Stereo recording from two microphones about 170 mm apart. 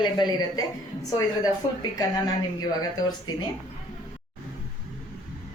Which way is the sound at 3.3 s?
25° left (ahead or behind).